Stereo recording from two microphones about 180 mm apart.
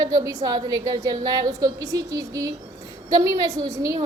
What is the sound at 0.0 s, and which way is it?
A woman's voice, 20° right (ahead or behind).